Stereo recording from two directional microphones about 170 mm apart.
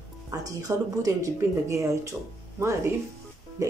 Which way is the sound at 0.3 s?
20° right (ahead or behind).